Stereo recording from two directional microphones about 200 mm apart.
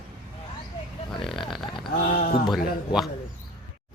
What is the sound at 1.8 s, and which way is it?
Speech, 45° left (ahead or behind).